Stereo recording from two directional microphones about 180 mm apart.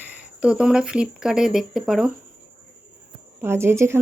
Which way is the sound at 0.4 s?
5° right (ahead or behind).